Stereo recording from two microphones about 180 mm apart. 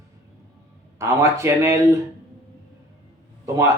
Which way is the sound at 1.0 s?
15° right (ahead or behind).